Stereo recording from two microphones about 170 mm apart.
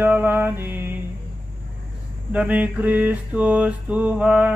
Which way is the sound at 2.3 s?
10° right (ahead or behind).